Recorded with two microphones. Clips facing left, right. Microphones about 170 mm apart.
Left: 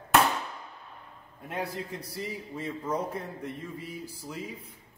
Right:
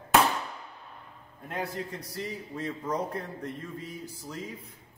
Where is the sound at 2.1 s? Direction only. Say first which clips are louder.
Right 1 dB; 5° left (ahead or behind).